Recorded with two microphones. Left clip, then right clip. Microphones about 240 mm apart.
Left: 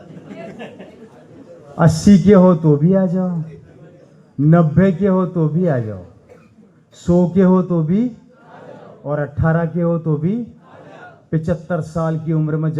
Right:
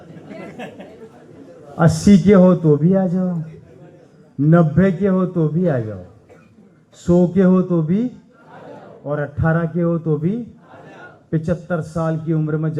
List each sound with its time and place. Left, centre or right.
1.7 s a man's voice: left
4.4 s a man's voice: left
7.0 s a man's voice: left
9.0 s a man's voice: left